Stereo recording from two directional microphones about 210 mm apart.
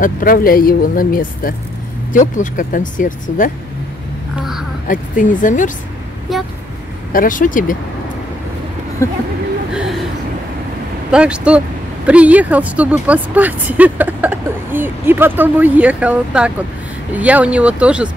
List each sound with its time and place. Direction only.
0.0 s speech: 40° left (ahead or behind)
4.8 s speech: 40° left (ahead or behind)
6.3 s speech: centre (ahead or behind)
7.1 s speech: 40° left (ahead or behind)
9.0 s speech: 15° left (ahead or behind)
11.1 s speech: 5° right (ahead or behind)